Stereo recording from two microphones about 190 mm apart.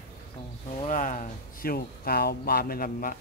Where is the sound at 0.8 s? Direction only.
40° left (ahead or behind).